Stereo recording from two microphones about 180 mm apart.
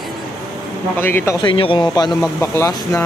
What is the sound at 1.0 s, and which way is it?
Speech, 15° left (ahead or behind).